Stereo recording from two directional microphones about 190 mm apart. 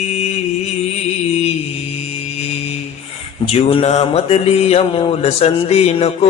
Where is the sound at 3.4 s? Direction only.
30° left (ahead or behind).